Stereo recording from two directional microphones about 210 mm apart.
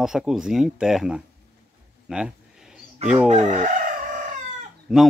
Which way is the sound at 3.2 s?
35° right (ahead or behind).